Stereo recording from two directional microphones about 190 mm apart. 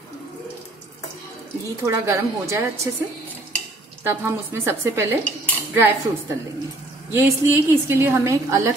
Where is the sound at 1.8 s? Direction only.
15° right (ahead or behind).